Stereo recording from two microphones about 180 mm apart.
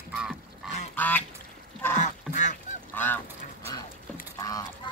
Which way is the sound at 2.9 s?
10° left (ahead or behind).